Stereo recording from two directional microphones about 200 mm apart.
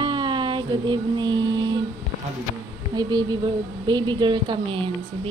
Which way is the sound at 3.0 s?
20° right (ahead or behind).